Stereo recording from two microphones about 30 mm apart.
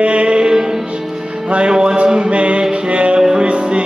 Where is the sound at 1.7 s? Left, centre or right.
Right.